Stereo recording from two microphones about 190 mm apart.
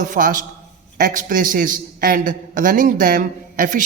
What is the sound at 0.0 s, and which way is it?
A man's voice, 45° right (ahead or behind).